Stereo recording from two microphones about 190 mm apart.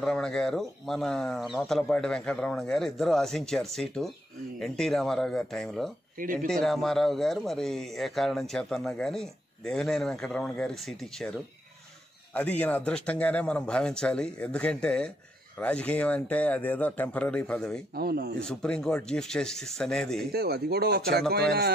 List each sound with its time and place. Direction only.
0.0 s speech: 5° left (ahead or behind)
6.1 s speech: 45° right (ahead or behind)
6.4 s speech: centre (ahead or behind)
12.4 s speech: 5° left (ahead or behind)
17.9 s speech: 55° right (ahead or behind)
18.4 s speech: 5° left (ahead or behind)
20.2 s speech: 55° right (ahead or behind)